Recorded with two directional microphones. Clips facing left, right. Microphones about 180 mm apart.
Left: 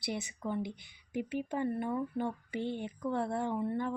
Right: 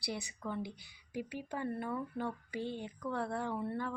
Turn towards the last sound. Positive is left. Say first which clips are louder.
# left 4 dB
turn(degrees=15)  # may be behind; listen again after turning